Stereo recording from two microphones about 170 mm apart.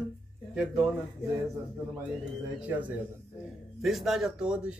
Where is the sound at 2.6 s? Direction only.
10° right (ahead or behind).